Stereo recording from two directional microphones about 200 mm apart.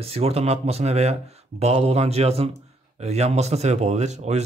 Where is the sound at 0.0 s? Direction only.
30° right (ahead or behind).